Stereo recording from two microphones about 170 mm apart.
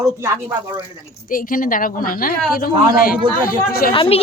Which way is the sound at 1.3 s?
55° left (ahead or behind).